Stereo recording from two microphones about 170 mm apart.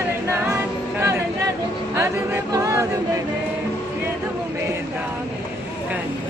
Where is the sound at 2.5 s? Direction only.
20° right (ahead or behind).